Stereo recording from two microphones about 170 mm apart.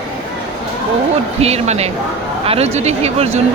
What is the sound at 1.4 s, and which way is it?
Speech, 40° right (ahead or behind).